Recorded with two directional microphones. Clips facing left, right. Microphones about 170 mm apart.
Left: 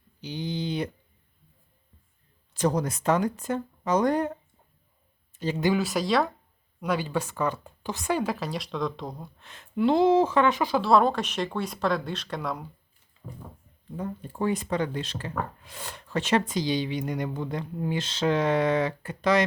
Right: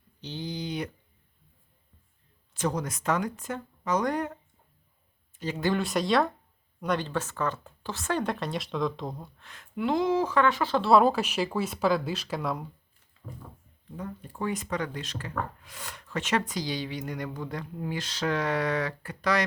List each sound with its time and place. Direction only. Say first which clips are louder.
0.2 s a sound: left 3 dB; 15° left (ahead or behind)
2.5 s speech: left 4 dB; 35° left (ahead or behind)
5.7 s speech: right 3 dB; centre (ahead or behind)
8.2 s speech: left 1 dB; centre (ahead or behind)
9.4 s speech: left 6 dB; 25° left (ahead or behind)
10.8 s speech: right 1 dB; centre (ahead or behind)
13.9 s speech: left 4 dB; 30° left (ahead or behind)